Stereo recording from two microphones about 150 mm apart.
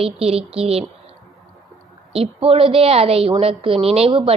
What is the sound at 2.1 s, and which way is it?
A woman's voice, 40° right (ahead or behind).